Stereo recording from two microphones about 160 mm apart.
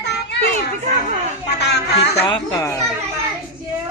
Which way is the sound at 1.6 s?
90° left.